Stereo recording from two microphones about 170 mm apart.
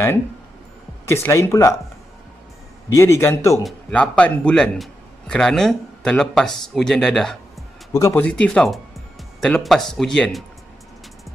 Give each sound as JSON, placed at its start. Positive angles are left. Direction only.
{"t": 1.0, "sound": "speech", "side_deg": 15}
{"t": 2.9, "sound": "a man's voice", "side_deg": 15}
{"t": 7.9, "sound": "a man's voice", "side_deg": 15}